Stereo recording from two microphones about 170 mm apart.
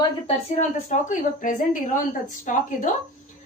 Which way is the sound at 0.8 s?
50° left (ahead or behind).